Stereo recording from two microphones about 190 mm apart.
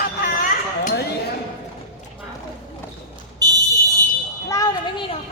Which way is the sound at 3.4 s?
20° right (ahead or behind).